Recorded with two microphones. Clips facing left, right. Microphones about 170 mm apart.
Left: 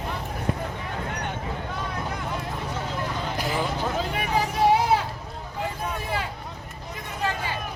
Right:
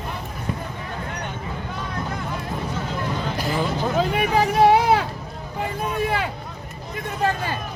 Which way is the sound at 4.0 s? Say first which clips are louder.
Right 9 dB; 70° right (ahead or behind).